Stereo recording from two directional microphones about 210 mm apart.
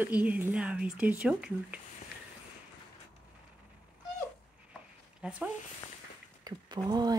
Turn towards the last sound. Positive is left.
turn(degrees=-20)  # may be behind; listen again after turning